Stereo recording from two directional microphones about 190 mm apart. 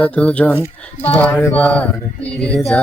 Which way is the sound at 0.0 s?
5° left (ahead or behind).